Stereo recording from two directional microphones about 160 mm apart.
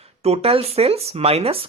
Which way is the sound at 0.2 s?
40° right (ahead or behind).